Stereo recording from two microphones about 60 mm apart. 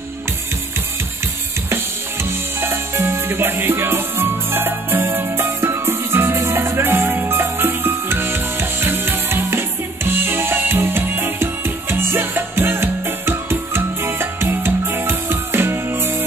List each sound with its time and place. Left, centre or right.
2.6 s music: right